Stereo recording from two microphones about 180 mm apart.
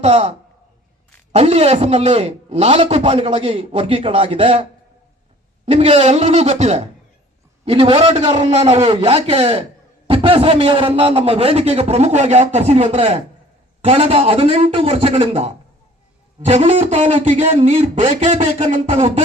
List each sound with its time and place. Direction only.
0.0 s a man's voice: 35° right (ahead or behind)
5.6 s a man's voice: 35° right (ahead or behind)